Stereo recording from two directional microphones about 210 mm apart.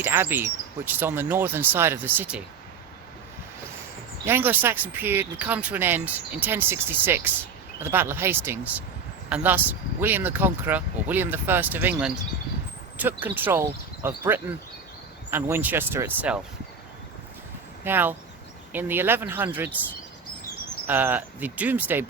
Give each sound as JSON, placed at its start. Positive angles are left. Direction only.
{"t": 0.0, "sound": "speech", "side_deg": -10}
{"t": 4.3, "sound": "speech", "side_deg": -10}
{"t": 17.8, "sound": "speech", "side_deg": -10}
{"t": 20.8, "sound": "speech", "side_deg": -10}